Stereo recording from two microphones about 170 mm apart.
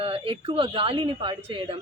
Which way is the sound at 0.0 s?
35° right (ahead or behind).